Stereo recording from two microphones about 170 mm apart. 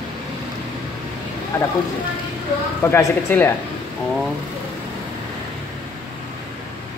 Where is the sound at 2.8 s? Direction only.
15° left (ahead or behind).